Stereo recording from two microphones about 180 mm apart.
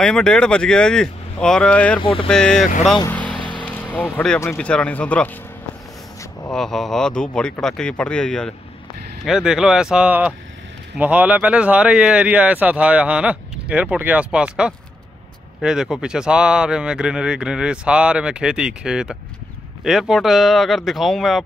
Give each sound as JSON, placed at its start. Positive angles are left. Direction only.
{"t": 0.0, "sound": "speech", "side_deg": 5}
{"t": 2.0, "sound": "speech", "side_deg": 30}
{"t": 2.2, "sound": "speech", "side_deg": 5}
{"t": 3.1, "sound": "vehicle", "side_deg": 10}
{"t": 4.4, "sound": "speech", "side_deg": 10}
{"t": 6.5, "sound": "speech", "side_deg": 0}